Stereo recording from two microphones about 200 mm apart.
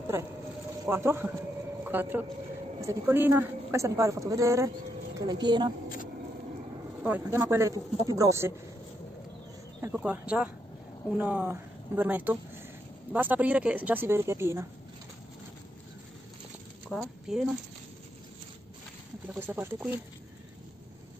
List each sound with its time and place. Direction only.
0.0 s a sound: 15° right (ahead or behind)
0.8 s a woman's voice: 10° right (ahead or behind)
7.0 s a woman's voice: 10° right (ahead or behind)
9.8 s a woman's voice: 10° right (ahead or behind)
17.0 s speech: centre (ahead or behind)
19.3 s a woman's voice: 10° right (ahead or behind)